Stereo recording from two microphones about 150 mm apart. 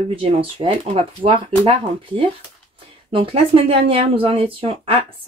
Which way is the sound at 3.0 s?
40° right (ahead or behind).